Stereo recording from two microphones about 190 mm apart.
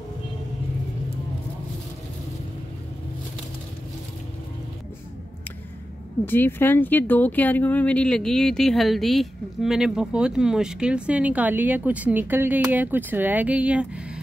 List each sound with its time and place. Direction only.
6.2 s speech: 10° left (ahead or behind); by 14.2 s 5° right (ahead or behind)